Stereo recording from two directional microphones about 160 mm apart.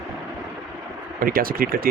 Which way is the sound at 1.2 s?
65° right (ahead or behind).